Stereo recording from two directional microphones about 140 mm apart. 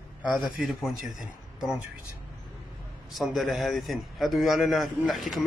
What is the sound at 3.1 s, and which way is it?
A man's voice, centre (ahead or behind).